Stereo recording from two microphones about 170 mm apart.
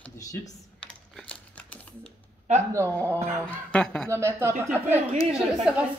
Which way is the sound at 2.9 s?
10° left (ahead or behind).